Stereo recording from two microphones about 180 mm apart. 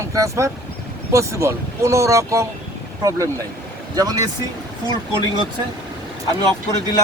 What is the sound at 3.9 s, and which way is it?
Speech, 20° right (ahead or behind).